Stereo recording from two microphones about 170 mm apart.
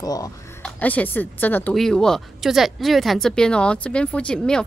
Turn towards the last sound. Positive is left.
turn(degrees=5)  # may be behind; listen again after turning